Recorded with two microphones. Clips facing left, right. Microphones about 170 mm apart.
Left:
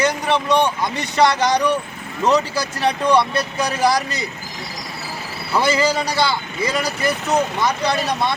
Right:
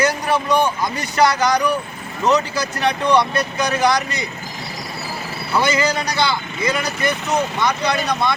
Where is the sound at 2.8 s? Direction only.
30° left (ahead or behind).